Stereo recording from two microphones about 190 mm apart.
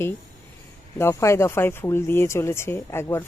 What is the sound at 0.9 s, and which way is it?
A woman's voice, 15° left (ahead or behind).